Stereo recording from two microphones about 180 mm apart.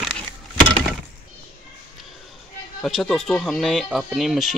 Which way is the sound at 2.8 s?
Centre (ahead or behind).